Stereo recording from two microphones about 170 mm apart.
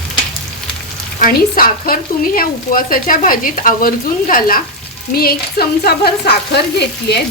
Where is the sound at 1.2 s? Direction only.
55° left (ahead or behind); by 7.2 s 75° left (ahead or behind).